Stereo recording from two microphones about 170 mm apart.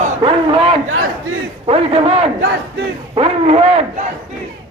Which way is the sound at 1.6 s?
35° right (ahead or behind).